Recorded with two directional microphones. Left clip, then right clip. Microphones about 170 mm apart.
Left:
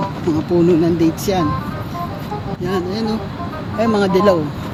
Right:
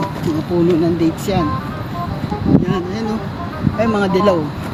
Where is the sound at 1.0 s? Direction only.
40° left (ahead or behind).